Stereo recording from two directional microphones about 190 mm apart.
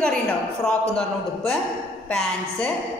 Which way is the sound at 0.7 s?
Centre (ahead or behind).